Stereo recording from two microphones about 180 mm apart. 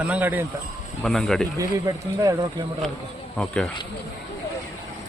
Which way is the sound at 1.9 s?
20° right (ahead or behind).